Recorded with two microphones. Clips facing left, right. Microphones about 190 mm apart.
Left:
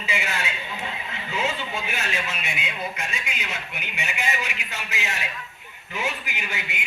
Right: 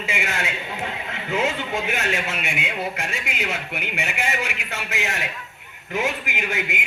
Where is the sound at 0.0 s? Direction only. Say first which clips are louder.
Right 2 dB; 90° right.